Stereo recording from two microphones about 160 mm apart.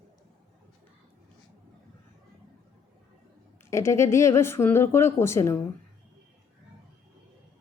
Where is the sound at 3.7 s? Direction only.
20° left (ahead or behind).